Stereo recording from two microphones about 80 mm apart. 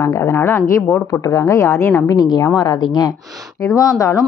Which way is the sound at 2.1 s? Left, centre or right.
Left.